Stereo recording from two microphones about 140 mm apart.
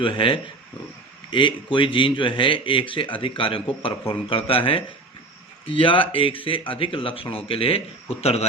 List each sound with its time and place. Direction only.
0.0 s speech: 40° left (ahead or behind)